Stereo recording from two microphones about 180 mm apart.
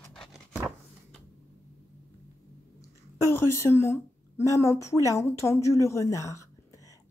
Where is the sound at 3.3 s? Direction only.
15° left (ahead or behind).